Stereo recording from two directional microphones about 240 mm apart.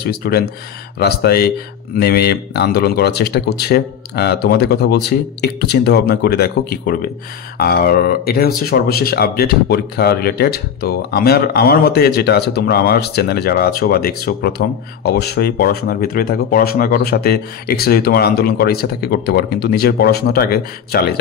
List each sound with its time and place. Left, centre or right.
0.0 s speech: left